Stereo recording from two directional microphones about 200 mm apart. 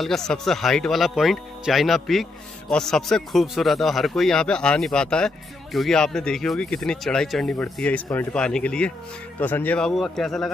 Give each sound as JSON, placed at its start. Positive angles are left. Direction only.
{"t": 0.0, "sound": "speech", "side_deg": 0}